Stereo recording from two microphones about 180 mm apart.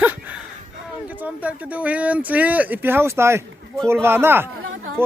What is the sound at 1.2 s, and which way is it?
A man's voice, 10° right (ahead or behind).